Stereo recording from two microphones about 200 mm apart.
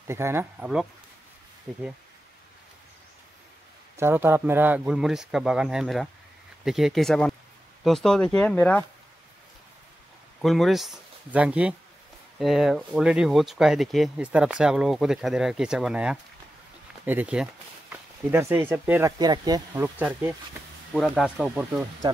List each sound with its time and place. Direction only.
0.0 s speech: 15° right (ahead or behind)
3.9 s speech: 10° right (ahead or behind); by 8.8 s 10° left (ahead or behind)
10.4 s speech: centre (ahead or behind)
22.0 s speech: 20° right (ahead or behind)